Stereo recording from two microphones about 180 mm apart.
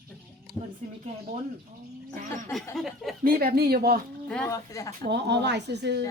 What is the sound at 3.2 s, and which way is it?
Speech, 55° right (ahead or behind).